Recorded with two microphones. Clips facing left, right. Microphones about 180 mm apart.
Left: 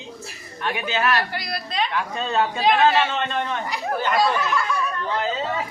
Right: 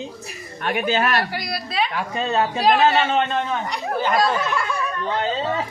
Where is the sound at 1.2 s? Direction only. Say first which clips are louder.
Right 2 dB; 5° right (ahead or behind).